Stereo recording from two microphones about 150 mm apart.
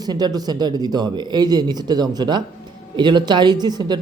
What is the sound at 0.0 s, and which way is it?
A man's voice, 25° right (ahead or behind).